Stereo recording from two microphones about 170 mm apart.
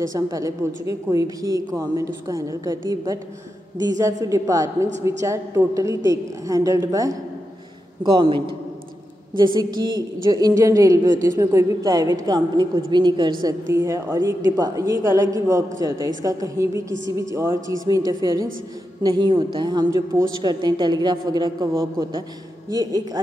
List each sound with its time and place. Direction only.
0.1 s a woman's voice: 20° right (ahead or behind)